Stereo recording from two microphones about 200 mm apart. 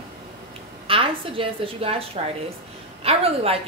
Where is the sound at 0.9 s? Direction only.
25° right (ahead or behind).